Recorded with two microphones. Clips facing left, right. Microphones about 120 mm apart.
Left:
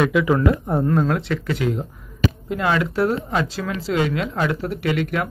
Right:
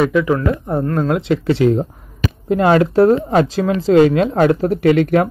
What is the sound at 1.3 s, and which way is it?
Speech, 30° right (ahead or behind).